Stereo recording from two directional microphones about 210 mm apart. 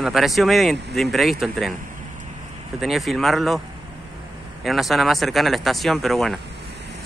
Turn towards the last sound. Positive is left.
turn(degrees=0)  # may be behind; listen again after turning